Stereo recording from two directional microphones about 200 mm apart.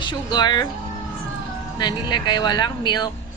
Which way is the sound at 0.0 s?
20° left (ahead or behind).